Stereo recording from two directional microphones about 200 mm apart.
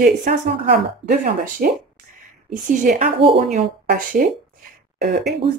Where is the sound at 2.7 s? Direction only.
40° right (ahead or behind).